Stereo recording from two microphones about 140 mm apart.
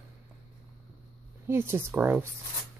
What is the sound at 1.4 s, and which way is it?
Speech, 15° right (ahead or behind).